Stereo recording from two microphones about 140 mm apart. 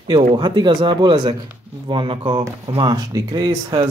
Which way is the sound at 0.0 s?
35° right (ahead or behind).